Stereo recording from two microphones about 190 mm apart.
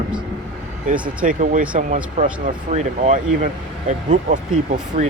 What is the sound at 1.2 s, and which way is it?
Speech, 45° right (ahead or behind).